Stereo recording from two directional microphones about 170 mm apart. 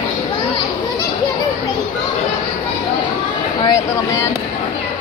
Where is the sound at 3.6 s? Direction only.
20° left (ahead or behind).